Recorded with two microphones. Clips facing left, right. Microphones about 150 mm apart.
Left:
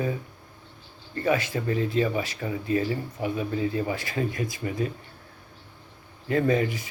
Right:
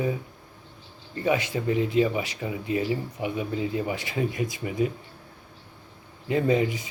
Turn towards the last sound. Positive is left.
turn(degrees=-20)  # may be behind; listen again after turning